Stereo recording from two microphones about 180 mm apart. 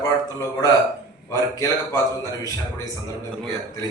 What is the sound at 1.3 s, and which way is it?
Speech, 20° left (ahead or behind).